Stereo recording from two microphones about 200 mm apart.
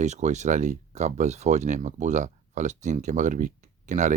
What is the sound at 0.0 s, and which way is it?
Speech, 35° right (ahead or behind).